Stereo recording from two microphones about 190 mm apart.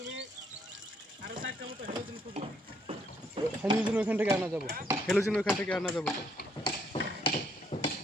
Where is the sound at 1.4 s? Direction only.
90° right.